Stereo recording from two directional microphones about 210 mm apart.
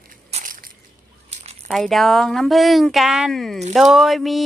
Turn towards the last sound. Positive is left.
turn(degrees=0)  # may be behind; listen again after turning